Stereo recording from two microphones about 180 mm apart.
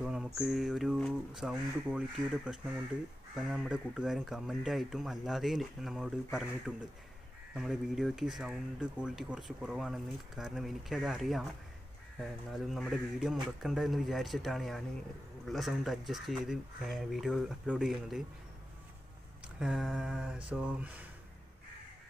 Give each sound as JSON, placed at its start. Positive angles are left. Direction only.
{"t": 0.0, "sound": "speech", "side_deg": -5}
{"t": 12.4, "sound": "speech", "side_deg": 0}
{"t": 19.6, "sound": "speech", "side_deg": 0}